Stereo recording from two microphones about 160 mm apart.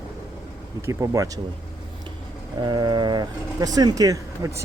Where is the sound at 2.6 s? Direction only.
25° right (ahead or behind).